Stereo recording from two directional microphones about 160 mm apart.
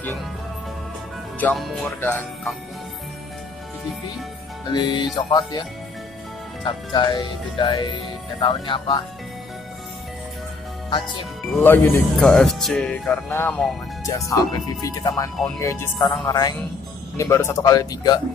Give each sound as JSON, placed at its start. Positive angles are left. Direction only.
{"t": 1.4, "sound": "speech", "side_deg": 0}
{"t": 2.0, "sound": "speech", "side_deg": 10}
{"t": 4.7, "sound": "speech", "side_deg": 25}
{"t": 6.6, "sound": "speech", "side_deg": 30}
{"t": 11.6, "sound": "speech", "side_deg": 10}